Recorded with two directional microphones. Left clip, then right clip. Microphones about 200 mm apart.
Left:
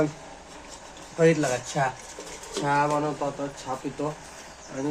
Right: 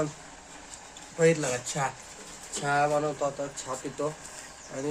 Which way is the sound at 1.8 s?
Centre (ahead or behind).